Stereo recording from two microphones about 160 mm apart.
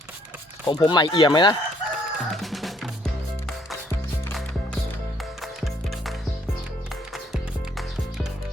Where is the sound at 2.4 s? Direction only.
Centre (ahead or behind).